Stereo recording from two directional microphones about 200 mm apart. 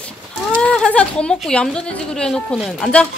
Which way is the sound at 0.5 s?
5° left (ahead or behind).